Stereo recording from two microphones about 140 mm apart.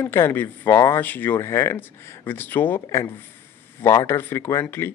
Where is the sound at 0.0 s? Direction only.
15° left (ahead or behind).